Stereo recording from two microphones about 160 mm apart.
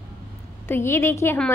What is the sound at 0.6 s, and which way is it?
Speech, 15° left (ahead or behind).